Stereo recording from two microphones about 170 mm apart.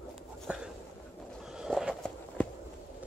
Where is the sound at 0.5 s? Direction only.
5° right (ahead or behind).